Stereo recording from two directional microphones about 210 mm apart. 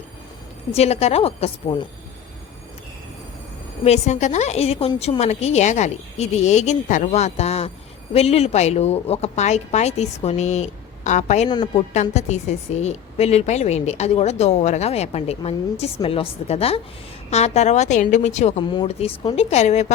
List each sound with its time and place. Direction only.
0.7 s a woman's voice: 30° left (ahead or behind)
3.8 s a woman's voice: 30° left (ahead or behind)
11.4 s a woman's voice: 20° left (ahead or behind)
12.1 s a woman's voice: 35° left (ahead or behind)